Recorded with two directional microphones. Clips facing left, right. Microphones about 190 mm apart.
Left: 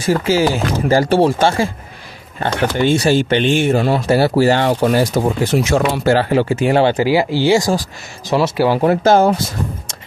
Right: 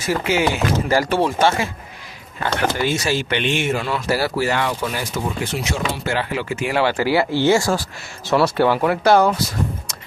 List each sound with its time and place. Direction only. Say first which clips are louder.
0.0 s speech: left 5 dB; 30° left (ahead or behind); by 8.6 s 15° left (ahead or behind)
8.6 s speech: left 3 dB; 35° left (ahead or behind)